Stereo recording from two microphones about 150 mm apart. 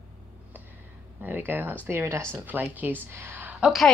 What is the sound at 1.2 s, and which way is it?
A woman's voice, 15° right (ahead or behind).